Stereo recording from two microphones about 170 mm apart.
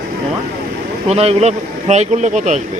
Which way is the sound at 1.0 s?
35° right (ahead or behind).